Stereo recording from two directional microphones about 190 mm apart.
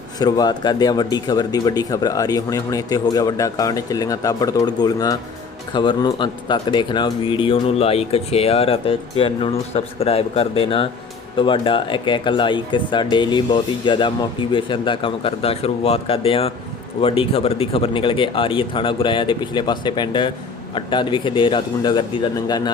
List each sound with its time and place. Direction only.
0.2 s speech: 20° left (ahead or behind)